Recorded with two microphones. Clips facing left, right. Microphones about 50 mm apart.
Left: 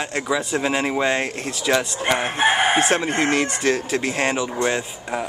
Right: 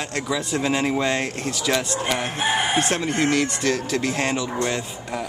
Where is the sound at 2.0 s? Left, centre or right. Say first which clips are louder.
Left 4 dB; left.